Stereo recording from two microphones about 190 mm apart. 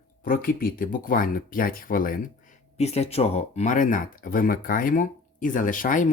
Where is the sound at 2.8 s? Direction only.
35° left (ahead or behind).